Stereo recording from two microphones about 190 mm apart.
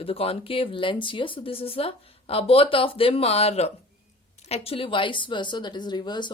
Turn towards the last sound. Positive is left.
turn(degrees=25)  # may be behind; listen again after turning